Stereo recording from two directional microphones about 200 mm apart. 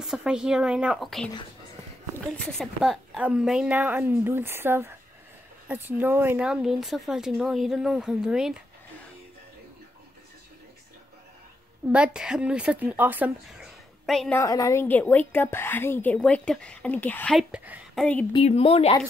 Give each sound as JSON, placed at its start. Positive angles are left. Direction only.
{"t": 0.0, "sound": "a woman's voice", "side_deg": -5}
{"t": 11.9, "sound": "a woman's voice", "side_deg": -5}
{"t": 14.4, "sound": "a woman's voice", "side_deg": 15}
{"t": 18.3, "sound": "speech", "side_deg": 30}